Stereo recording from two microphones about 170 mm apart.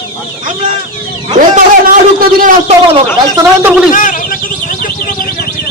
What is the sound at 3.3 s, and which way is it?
Speech, 10° right (ahead or behind).